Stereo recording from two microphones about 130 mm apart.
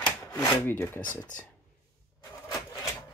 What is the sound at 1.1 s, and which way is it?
Speech, 85° left.